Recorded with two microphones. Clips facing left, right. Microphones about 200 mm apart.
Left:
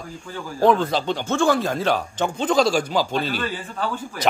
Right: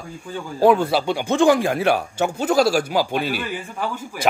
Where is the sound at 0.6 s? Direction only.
10° right (ahead or behind).